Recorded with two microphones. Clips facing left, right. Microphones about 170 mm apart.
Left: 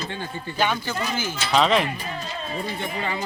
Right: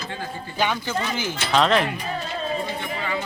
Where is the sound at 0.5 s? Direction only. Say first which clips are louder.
Even; 15° right (ahead or behind).